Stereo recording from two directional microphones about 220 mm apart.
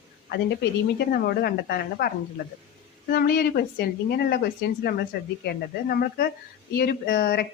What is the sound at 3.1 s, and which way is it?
Speech, 45° left (ahead or behind).